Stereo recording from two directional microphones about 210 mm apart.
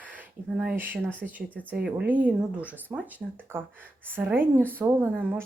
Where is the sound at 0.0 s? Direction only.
5° right (ahead or behind).